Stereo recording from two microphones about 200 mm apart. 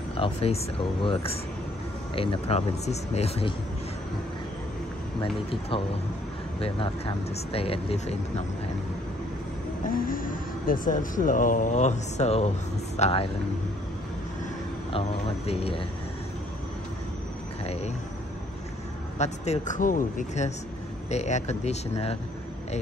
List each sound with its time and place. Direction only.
0.1 s speech: 30° left (ahead or behind)
5.2 s speech: 25° left (ahead or behind)
9.8 s speech: 45° left (ahead or behind)
14.9 s speech: 30° left (ahead or behind)
17.6 s speech: 30° left (ahead or behind)
19.1 s speech: 35° left (ahead or behind)